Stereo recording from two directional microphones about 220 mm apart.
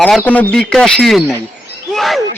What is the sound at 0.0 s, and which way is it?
A man's voice, 5° left (ahead or behind).